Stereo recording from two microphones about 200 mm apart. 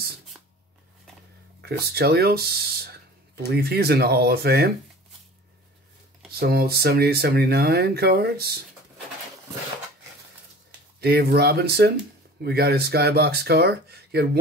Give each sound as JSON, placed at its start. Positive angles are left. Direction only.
{"t": 1.6, "sound": "speech", "side_deg": -55}
{"t": 6.4, "sound": "speech", "side_deg": -50}
{"t": 11.0, "sound": "speech", "side_deg": -50}